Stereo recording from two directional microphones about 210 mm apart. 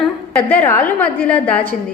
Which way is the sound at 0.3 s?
10° left (ahead or behind).